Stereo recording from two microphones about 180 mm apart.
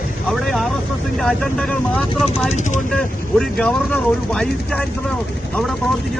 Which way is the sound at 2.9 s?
5° left (ahead or behind).